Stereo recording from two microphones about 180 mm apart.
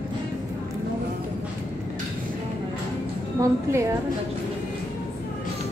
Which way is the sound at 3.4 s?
15° right (ahead or behind).